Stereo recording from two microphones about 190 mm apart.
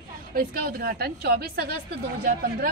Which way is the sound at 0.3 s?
50° right (ahead or behind).